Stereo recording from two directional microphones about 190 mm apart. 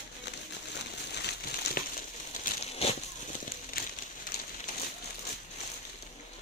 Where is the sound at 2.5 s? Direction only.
45° left (ahead or behind).